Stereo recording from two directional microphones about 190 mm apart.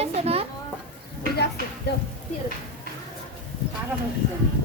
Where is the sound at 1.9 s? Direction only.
60° left (ahead or behind).